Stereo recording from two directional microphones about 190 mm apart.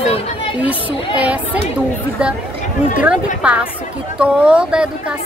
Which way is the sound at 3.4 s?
5° right (ahead or behind).